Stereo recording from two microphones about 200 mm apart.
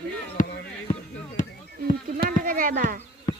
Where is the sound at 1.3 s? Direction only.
40° left (ahead or behind).